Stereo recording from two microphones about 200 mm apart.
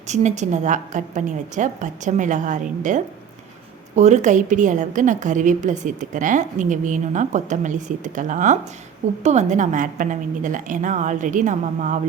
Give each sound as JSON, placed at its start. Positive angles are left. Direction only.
{"t": 0.1, "sound": "a woman's voice", "side_deg": -35}